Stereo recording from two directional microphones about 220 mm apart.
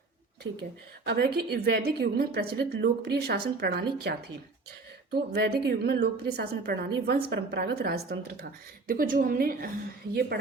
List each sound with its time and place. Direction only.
0.4 s a woman's voice: 55° right (ahead or behind); by 9.6 s 40° right (ahead or behind)